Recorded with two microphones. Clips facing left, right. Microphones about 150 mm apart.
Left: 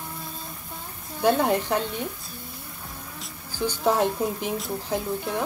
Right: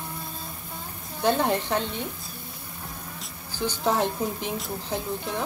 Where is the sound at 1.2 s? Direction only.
5° left (ahead or behind).